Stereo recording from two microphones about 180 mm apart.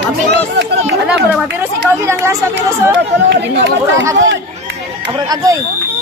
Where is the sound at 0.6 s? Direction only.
80° right.